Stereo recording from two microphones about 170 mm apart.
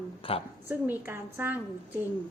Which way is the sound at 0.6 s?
15° right (ahead or behind).